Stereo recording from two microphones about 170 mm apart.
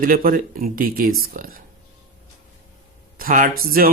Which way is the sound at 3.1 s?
55° right (ahead or behind).